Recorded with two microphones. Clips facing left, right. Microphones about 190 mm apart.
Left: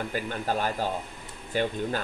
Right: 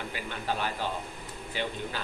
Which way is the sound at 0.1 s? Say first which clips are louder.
Left 5 dB; 45° left (ahead or behind).